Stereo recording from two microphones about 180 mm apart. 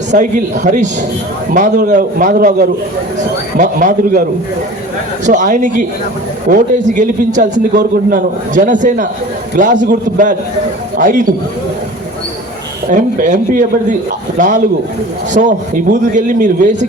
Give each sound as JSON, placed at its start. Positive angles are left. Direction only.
{"t": 0.1, "sound": "a man's voice", "side_deg": -45}
{"t": 5.2, "sound": "a man's voice", "side_deg": -45}
{"t": 12.9, "sound": "a man's voice", "side_deg": -45}